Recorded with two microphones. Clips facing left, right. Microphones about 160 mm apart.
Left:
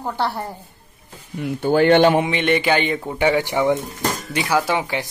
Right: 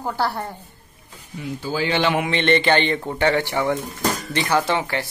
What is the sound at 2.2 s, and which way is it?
Speech, 10° left (ahead or behind).